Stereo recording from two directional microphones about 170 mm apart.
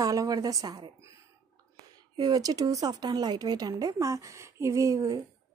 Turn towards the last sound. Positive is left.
turn(degrees=-20)  # may be behind; listen again after turning